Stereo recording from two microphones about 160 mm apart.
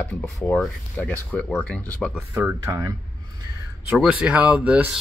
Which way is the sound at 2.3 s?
15° right (ahead or behind).